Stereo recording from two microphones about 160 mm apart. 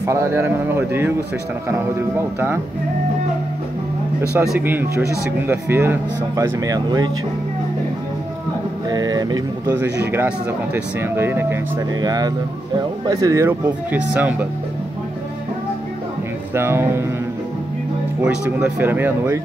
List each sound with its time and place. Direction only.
0.0 s speech: 15° right (ahead or behind)
4.5 s speech: 10° right (ahead or behind)
8.8 s a sound: 25° right (ahead or behind)
10.1 s speech: 15° right (ahead or behind)
12.0 s speech: 25° right (ahead or behind)
16.5 s speech: 15° right (ahead or behind)
18.2 s speech: 5° right (ahead or behind)